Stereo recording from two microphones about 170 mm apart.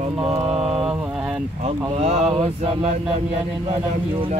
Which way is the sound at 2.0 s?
40° right (ahead or behind).